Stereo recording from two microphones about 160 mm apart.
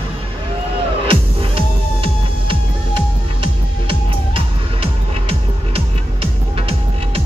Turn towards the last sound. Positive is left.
turn(degrees=-35)  # may be behind; listen again after turning